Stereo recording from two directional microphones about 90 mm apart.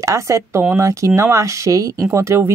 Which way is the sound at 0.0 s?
35° right (ahead or behind).